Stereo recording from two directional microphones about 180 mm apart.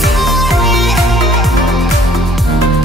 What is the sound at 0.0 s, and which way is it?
Music, centre (ahead or behind).